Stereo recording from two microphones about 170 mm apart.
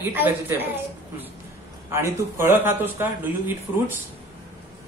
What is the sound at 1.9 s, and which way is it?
A man's voice, 15° right (ahead or behind).